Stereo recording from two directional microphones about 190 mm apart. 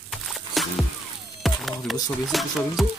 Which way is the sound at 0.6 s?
Centre (ahead or behind).